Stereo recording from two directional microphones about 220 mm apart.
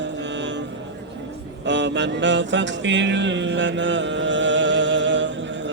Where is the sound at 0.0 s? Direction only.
55° right (ahead or behind).